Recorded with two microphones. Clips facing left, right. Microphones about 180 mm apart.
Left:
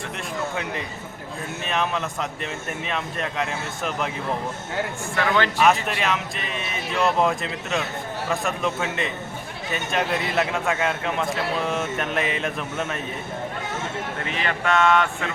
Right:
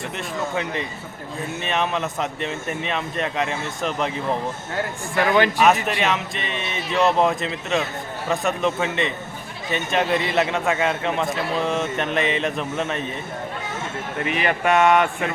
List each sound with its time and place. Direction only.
0.5 s a man's voice: centre (ahead or behind)
5.1 s speech: 15° right (ahead or behind)
6.0 s a man's voice: centre (ahead or behind)
14.3 s speech: 15° right (ahead or behind)